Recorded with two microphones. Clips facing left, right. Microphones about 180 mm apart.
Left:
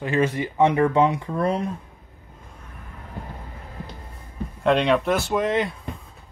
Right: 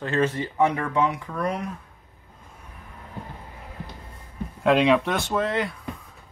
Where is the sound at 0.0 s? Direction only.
15° left (ahead or behind); by 1.7 s 30° left (ahead or behind).